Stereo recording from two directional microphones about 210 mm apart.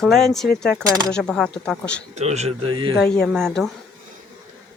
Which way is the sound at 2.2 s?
30° right (ahead or behind).